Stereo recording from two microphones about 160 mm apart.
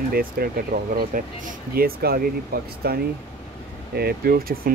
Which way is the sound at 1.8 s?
70° right (ahead or behind).